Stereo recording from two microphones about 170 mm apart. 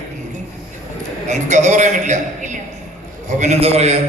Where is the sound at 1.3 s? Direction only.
45° right (ahead or behind).